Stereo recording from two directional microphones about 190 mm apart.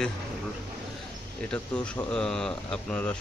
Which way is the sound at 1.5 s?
5° left (ahead or behind).